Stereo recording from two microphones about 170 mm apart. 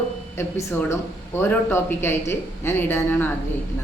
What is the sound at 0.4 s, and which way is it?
A woman's voice, 15° left (ahead or behind).